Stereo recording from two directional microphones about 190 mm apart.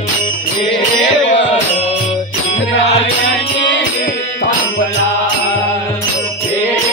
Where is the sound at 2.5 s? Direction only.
35° left (ahead or behind).